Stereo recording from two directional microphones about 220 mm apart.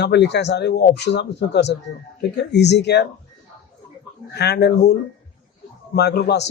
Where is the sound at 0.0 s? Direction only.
50° left (ahead or behind).